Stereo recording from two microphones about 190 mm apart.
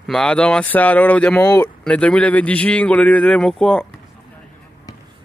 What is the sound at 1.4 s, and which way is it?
Speech, 20° left (ahead or behind).